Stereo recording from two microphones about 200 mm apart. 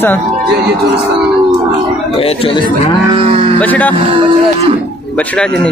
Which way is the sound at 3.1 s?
30° right (ahead or behind).